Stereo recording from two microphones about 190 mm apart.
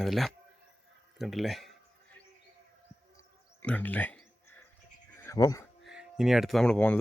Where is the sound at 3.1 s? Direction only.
10° left (ahead or behind).